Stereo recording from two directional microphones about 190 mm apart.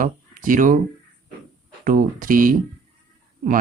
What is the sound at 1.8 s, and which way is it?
Speech, 45° right (ahead or behind).